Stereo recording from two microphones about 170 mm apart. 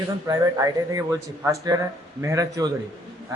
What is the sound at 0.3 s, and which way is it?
A man's voice, 20° right (ahead or behind).